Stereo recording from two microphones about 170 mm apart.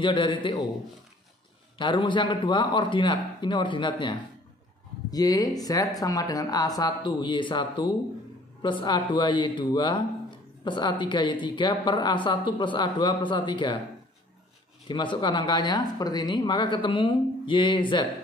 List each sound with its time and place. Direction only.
0.0 s speech: 30° left (ahead or behind)
1.8 s speech: 30° left (ahead or behind)
14.9 s speech: 25° left (ahead or behind)